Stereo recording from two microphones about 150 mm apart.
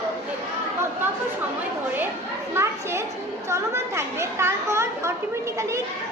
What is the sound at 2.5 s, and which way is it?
A child's voice, 15° right (ahead or behind).